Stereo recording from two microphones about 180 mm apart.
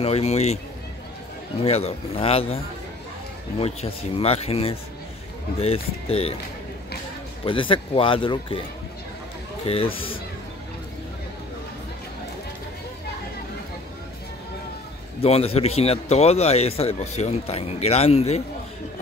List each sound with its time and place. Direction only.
0.0 s a man's voice: 35° left (ahead or behind)
1.6 s a man's voice: 35° left (ahead or behind)
7.4 s speech: 30° left (ahead or behind)
9.7 s a man's voice: 30° left (ahead or behind)
15.2 s a man's voice: 35° left (ahead or behind)